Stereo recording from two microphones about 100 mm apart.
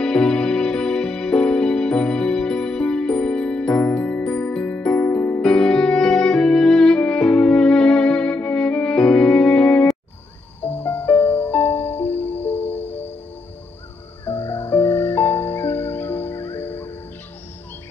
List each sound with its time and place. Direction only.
0.0 s music: 10° left (ahead or behind)
10.6 s music: 20° left (ahead or behind)
14.2 s music: 20° left (ahead or behind)